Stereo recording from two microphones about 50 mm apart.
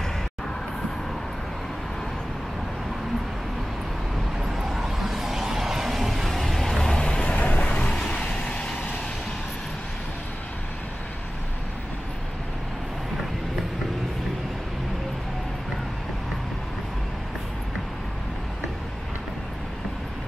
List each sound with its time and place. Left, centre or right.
4.4 s vehicle: centre
7.0 s vehicle: centre